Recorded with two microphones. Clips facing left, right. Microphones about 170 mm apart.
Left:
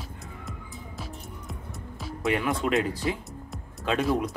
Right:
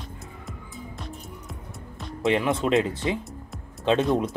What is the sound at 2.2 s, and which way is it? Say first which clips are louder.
Speech: right 3 dB; 25° right (ahead or behind).